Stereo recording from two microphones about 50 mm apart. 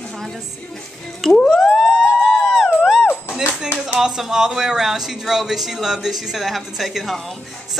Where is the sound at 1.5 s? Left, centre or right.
Centre.